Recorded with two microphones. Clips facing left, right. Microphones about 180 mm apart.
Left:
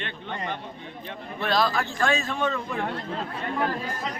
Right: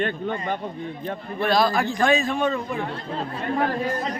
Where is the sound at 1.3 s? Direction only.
10° right (ahead or behind).